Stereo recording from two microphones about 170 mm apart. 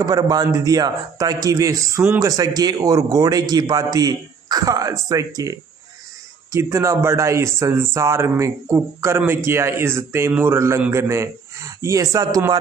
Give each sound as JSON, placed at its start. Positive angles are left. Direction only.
{"t": 0.0, "sound": "a man's voice", "side_deg": -20}